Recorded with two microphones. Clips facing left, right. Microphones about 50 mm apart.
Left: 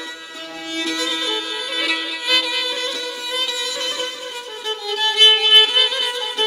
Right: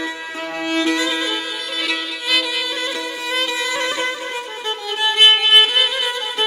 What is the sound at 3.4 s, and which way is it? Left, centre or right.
Music, right.